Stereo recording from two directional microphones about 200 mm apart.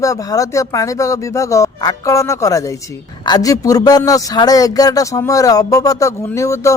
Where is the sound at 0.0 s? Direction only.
15° left (ahead or behind).